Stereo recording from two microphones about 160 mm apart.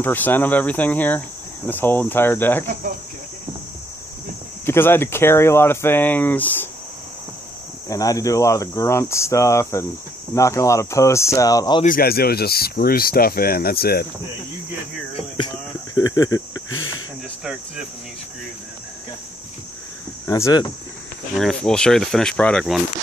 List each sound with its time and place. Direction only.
0.0 s speech: 10° left (ahead or behind)
4.6 s speech: 15° left (ahead or behind)
7.9 s speech: 20° left (ahead or behind)
11.8 s speech: 65° left (ahead or behind)
15.1 s cricket: 30° left (ahead or behind)
20.2 s speech: 20° left (ahead or behind)
21.4 s speech: 5° left (ahead or behind)